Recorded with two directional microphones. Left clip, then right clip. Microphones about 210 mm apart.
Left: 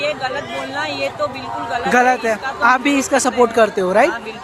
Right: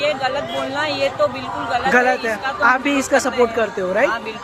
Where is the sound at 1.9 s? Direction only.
20° left (ahead or behind).